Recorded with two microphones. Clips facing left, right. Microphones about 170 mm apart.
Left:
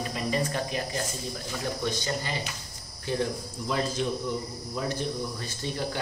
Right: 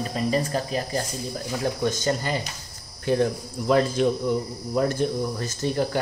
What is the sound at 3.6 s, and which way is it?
Speech, 60° right (ahead or behind).